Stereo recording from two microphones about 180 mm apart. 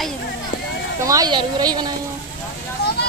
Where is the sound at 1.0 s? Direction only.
20° right (ahead or behind).